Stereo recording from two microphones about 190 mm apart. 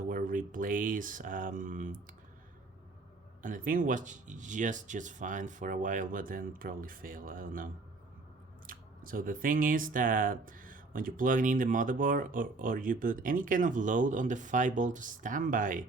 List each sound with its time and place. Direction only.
0.1 s speech: 45° right (ahead or behind)
3.4 s speech: 45° right (ahead or behind)